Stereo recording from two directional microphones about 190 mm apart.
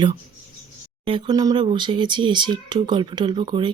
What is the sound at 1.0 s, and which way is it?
Speech, 25° right (ahead or behind).